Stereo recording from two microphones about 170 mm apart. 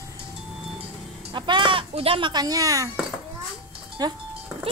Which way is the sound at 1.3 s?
25° right (ahead or behind).